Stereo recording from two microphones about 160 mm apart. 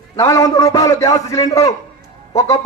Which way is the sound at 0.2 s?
20° left (ahead or behind).